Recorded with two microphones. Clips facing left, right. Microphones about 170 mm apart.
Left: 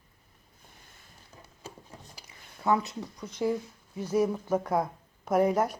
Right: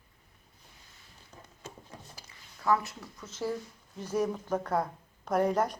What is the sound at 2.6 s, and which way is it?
Speech, 20° left (ahead or behind).